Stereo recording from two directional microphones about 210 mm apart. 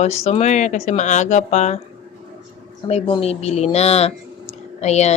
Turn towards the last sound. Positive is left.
turn(degrees=30)  # may be behind; listen again after turning